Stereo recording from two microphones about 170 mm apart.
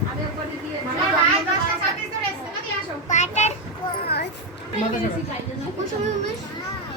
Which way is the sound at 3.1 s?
45° left (ahead or behind).